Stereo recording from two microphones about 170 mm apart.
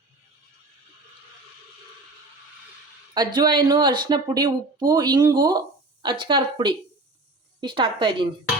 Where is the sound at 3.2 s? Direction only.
25° right (ahead or behind).